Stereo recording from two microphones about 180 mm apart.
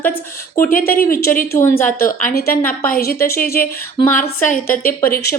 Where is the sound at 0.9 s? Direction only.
55° left (ahead or behind).